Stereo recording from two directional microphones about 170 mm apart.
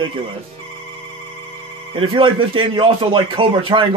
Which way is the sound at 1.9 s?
30° right (ahead or behind).